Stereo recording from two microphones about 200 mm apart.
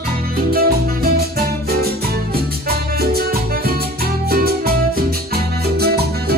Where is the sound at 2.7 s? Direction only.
50° right (ahead or behind).